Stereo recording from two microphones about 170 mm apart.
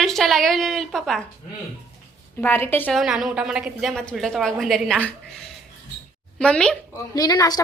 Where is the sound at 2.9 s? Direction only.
Centre (ahead or behind).